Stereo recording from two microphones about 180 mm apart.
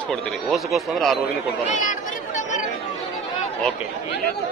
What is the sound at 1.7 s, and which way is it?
Chatter, 45° left (ahead or behind).